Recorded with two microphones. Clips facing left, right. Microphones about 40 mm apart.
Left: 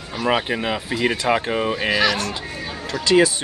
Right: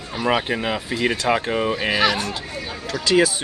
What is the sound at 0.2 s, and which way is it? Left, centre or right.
Speech, centre.